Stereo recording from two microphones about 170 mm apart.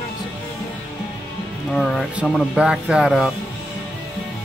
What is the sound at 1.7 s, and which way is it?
Speech, centre (ahead or behind).